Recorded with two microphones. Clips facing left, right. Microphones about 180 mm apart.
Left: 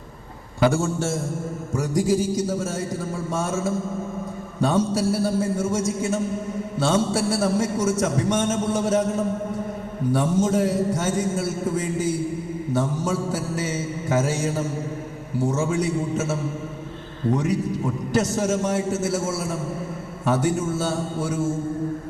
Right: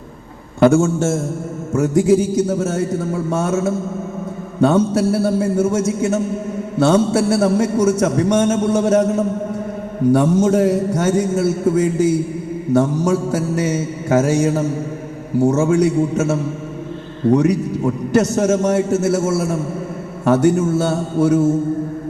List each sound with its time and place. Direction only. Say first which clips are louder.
0.9 s a man's voice: right 7 dB; 50° right (ahead or behind)
2.0 s a man's voice: right 7 dB; 65° right (ahead or behind)